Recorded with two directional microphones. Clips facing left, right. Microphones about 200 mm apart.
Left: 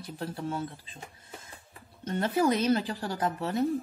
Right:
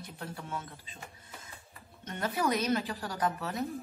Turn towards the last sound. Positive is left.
turn(degrees=30)  # may be behind; listen again after turning